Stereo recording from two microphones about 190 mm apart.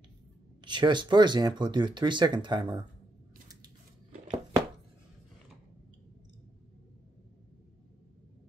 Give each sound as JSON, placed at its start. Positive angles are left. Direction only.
{"t": 0.6, "sound": "speech", "side_deg": -25}